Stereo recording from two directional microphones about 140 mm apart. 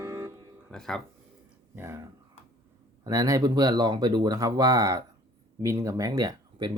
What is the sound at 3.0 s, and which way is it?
Speech, 25° right (ahead or behind).